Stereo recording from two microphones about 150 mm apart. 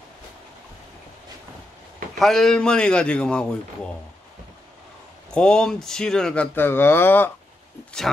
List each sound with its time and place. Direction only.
2.1 s a man's voice: centre (ahead or behind)
5.3 s speech: 5° left (ahead or behind)